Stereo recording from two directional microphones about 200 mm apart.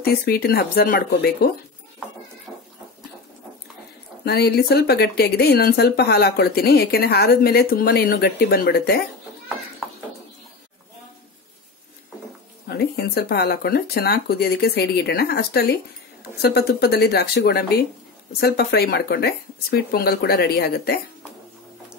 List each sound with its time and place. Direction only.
0.0 s speech: 50° left (ahead or behind)
2.5 s goat: 10° right (ahead or behind)
4.2 s speech: 50° left (ahead or behind)
12.6 s speech: 50° left (ahead or behind)